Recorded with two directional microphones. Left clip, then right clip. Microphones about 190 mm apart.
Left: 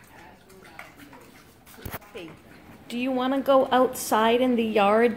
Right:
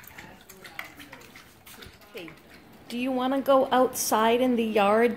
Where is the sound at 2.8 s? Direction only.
5° right (ahead or behind).